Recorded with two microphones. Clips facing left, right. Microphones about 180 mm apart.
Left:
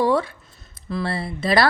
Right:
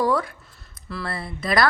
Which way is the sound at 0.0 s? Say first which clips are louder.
Left 3 dB; 25° left (ahead or behind).